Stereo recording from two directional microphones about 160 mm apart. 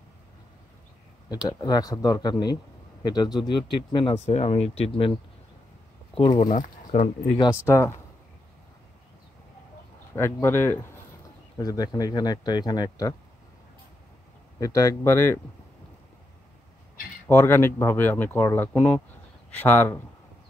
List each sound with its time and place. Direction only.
1.6 s a man's voice: 25° left (ahead or behind)
6.3 s speech: 50° left (ahead or behind)
7.6 s speech: 15° left (ahead or behind)
10.1 s a man's voice: 15° left (ahead or behind)
14.6 s a man's voice: 20° left (ahead or behind)
17.3 s speech: 15° left (ahead or behind)